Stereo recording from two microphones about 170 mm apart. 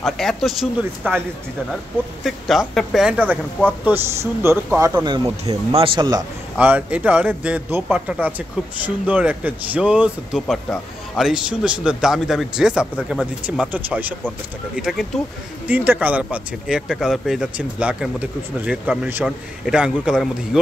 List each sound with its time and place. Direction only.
0.0 s a man's voice: centre (ahead or behind)
2.2 s speech: centre (ahead or behind); by 5.3 s 25° right (ahead or behind)
5.7 s a man's voice: 35° right (ahead or behind)
6.6 s speech: 10° right (ahead or behind)
10.4 s a man's voice: 5° left (ahead or behind)